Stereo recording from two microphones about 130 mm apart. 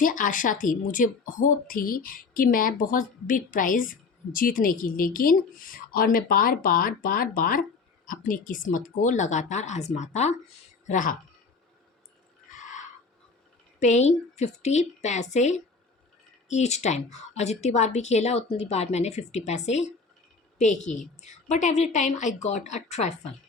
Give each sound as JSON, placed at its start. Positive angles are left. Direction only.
{"t": 0.0, "sound": "a woman's voice", "side_deg": 90}
{"t": 10.8, "sound": "speech", "side_deg": 85}
{"t": 12.5, "sound": "a sound", "side_deg": 75}
{"t": 13.7, "sound": "a woman's voice", "side_deg": 60}